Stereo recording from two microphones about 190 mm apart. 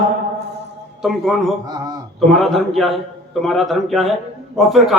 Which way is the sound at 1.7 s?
20° right (ahead or behind).